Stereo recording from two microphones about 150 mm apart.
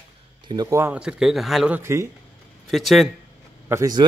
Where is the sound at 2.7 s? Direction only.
Centre (ahead or behind).